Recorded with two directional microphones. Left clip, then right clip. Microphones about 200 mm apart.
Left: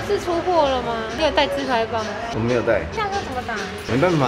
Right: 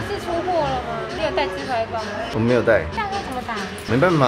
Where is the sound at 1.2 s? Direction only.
40° left (ahead or behind).